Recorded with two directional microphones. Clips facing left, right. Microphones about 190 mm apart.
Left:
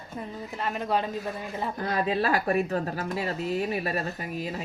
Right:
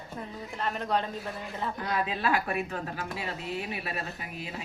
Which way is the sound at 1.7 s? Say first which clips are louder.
Left 7 dB; 40° left (ahead or behind).